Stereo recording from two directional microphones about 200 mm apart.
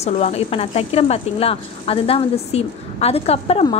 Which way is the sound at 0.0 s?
30° left (ahead or behind).